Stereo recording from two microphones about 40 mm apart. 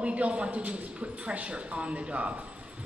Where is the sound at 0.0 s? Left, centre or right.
Right.